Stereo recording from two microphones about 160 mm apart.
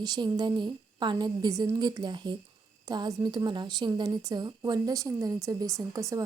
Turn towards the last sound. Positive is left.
turn(degrees=-20)  # may be behind; listen again after turning